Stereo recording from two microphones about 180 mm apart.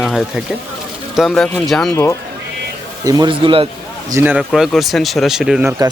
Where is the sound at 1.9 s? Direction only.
15° left (ahead or behind).